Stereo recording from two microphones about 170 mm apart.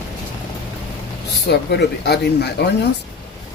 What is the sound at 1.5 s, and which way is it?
Speech, 80° left.